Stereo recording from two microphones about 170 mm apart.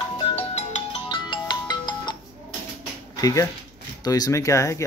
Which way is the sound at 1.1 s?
25° left (ahead or behind).